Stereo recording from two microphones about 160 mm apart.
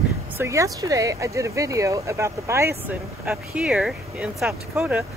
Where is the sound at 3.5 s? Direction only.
5° right (ahead or behind).